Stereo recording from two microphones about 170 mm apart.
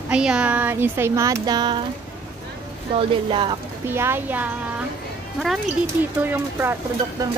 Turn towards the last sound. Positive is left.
turn(degrees=-15)  # may be behind; listen again after turning